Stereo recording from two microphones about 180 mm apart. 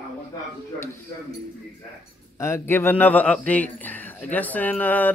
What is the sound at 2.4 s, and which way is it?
Speech, 15° left (ahead or behind).